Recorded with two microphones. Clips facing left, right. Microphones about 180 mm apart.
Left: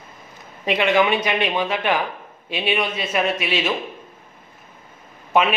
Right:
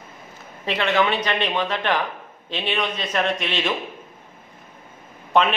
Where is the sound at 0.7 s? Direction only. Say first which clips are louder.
Left 3 dB; 10° left (ahead or behind).